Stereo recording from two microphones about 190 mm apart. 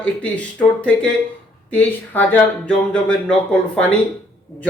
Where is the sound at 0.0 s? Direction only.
5° left (ahead or behind).